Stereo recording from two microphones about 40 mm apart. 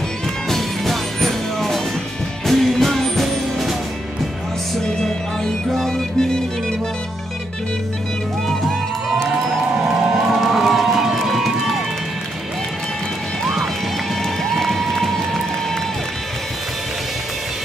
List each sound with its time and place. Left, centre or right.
0.5 s music: centre
5.7 s music: centre
6.1 s music: centre
10.4 s a sound: centre
11.2 s run: centre
14.5 s crowd: centre